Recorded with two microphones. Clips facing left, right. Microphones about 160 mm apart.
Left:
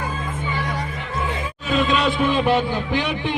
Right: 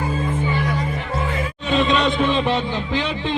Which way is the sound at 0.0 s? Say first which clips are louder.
Right 5 dB; 30° right (ahead or behind).